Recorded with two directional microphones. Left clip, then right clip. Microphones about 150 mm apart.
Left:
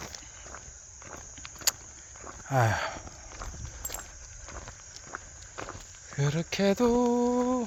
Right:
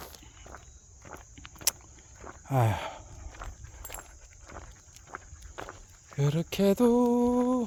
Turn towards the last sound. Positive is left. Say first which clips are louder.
# even
turn(degrees=-35)  # may be behind; listen again after turning